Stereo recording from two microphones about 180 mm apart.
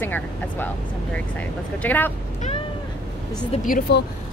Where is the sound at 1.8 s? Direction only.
10° left (ahead or behind).